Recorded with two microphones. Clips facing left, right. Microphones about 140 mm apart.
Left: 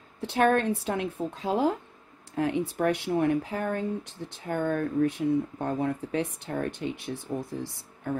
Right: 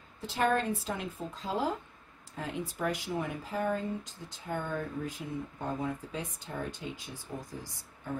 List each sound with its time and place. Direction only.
0.2 s speech: 65° left (ahead or behind)